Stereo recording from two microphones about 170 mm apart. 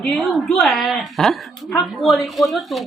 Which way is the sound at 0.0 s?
Centre (ahead or behind).